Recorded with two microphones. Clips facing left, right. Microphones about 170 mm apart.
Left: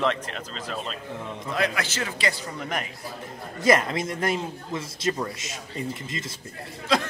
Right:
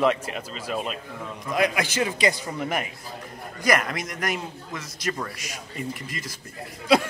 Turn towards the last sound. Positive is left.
turn(degrees=-10)  # may be behind; listen again after turning